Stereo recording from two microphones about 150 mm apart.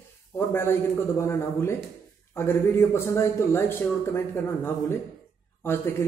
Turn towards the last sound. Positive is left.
turn(degrees=15)  # may be behind; listen again after turning